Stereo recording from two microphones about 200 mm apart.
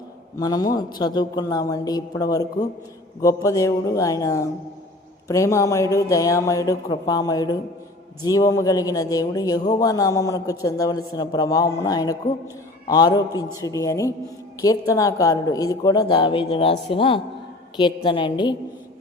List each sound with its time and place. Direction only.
0.3 s a man's voice: 20° left (ahead or behind)